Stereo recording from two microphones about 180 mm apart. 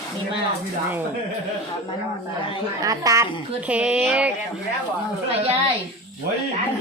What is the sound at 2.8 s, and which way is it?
Speech, 20° right (ahead or behind).